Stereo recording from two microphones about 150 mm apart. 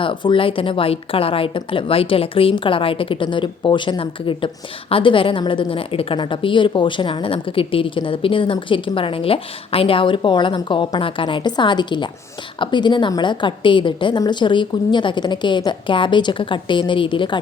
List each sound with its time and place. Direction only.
0.0 s a woman's voice: 35° left (ahead or behind)